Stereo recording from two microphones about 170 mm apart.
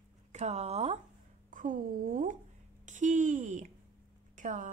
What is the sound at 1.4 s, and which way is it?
A woman's voice, 50° right (ahead or behind).